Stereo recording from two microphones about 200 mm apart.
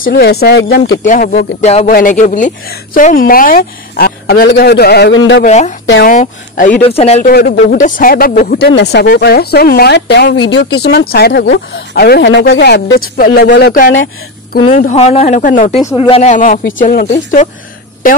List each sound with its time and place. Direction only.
0.0 s speech: 55° left (ahead or behind)
1.0 s speech: 40° left (ahead or behind)
1.9 s speech: 45° left (ahead or behind)
5.4 s speech: 35° left (ahead or behind)
7.2 s speech: 50° left (ahead or behind)
14.8 s speech: 35° left (ahead or behind)